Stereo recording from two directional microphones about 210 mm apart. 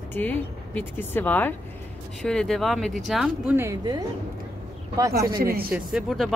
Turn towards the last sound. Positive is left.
turn(degrees=0)  # may be behind; listen again after turning